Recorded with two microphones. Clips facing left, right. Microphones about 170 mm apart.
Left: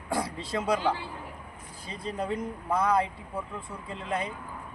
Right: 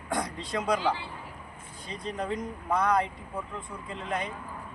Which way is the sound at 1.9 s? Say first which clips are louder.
Left 1 dB; 5° left (ahead or behind).